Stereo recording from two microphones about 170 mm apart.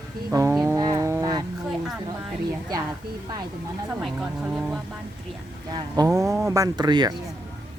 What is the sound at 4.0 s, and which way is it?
Speech, 5° right (ahead or behind).